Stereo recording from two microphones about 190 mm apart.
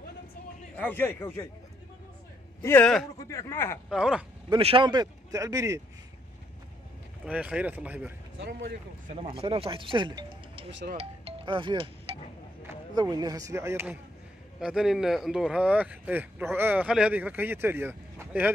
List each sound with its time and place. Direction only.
0.7 s a man's voice: 10° left (ahead or behind)
2.6 s a man's voice: 10° left (ahead or behind)
3.3 s a man's voice: 15° left (ahead or behind)
3.9 s speech: 5° right (ahead or behind)
4.5 s speech: 30° right (ahead or behind)
7.2 s a man's voice: 5° right (ahead or behind)
8.5 s speech: 65° right (ahead or behind)
9.0 s speech: 35° right (ahead or behind)
11.0 s music: 30° right (ahead or behind)
12.6 s speech: 20° right (ahead or behind)
14.6 s a man's voice: 5° right (ahead or behind)